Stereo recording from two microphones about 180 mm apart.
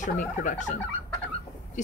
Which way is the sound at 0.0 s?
45° left (ahead or behind).